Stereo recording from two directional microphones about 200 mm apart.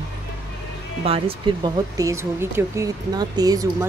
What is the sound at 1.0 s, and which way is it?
Speech, 30° right (ahead or behind).